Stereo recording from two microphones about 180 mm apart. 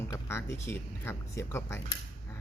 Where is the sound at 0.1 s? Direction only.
15° left (ahead or behind).